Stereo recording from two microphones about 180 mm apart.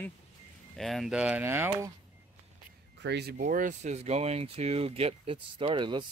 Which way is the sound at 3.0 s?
70° right (ahead or behind).